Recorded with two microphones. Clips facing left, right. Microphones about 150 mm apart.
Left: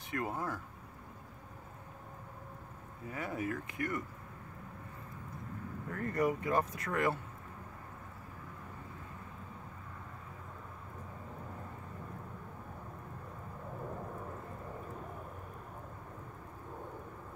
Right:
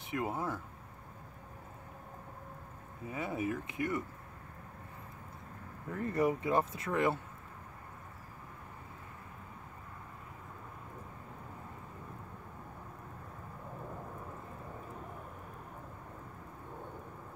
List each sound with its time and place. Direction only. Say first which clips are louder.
0.1 s speech: right 1 dB; 20° right (ahead or behind)
3.1 s speech: right 2 dB; 20° right (ahead or behind)
5.9 s speech: right 2 dB; 20° right (ahead or behind)